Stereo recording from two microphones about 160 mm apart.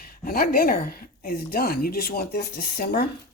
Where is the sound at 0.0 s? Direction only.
65° left (ahead or behind).